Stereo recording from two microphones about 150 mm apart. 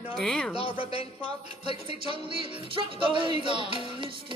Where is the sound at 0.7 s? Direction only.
40° left (ahead or behind).